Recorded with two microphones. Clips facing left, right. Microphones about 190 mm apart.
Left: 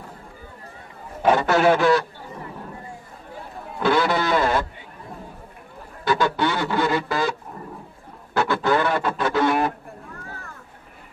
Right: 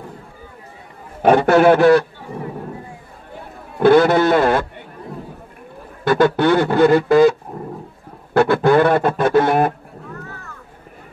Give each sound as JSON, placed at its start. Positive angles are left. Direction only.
{"t": 1.2, "sound": "speech", "side_deg": -55}
{"t": 3.8, "sound": "a man's voice", "side_deg": -55}
{"t": 6.0, "sound": "a sound", "side_deg": -55}